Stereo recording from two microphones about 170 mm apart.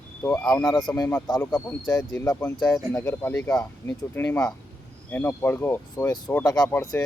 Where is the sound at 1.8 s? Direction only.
25° left (ahead or behind).